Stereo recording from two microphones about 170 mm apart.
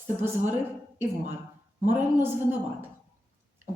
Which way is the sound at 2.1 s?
15° right (ahead or behind).